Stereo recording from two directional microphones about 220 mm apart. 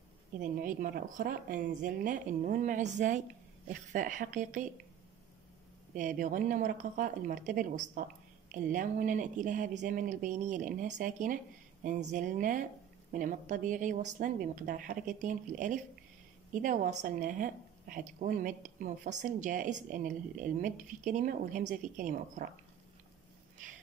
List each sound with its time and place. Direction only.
0.4 s a woman's voice: 40° right (ahead or behind)
5.9 s a woman's voice: 35° right (ahead or behind)